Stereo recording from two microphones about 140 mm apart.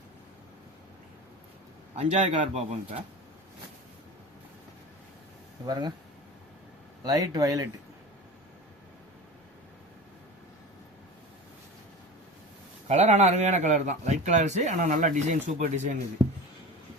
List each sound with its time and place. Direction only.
2.0 s speech: 55° right (ahead or behind)
5.6 s speech: 30° right (ahead or behind)
7.0 s speech: 25° right (ahead or behind)
12.9 s a man's voice: 55° right (ahead or behind)